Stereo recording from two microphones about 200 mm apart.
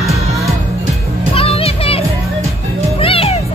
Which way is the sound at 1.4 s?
30° left (ahead or behind).